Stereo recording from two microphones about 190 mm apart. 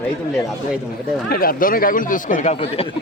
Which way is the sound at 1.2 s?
50° left (ahead or behind).